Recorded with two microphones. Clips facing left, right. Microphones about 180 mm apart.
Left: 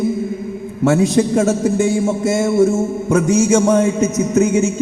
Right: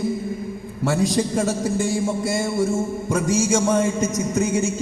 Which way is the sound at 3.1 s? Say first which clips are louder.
Left 7 dB; 60° left (ahead or behind).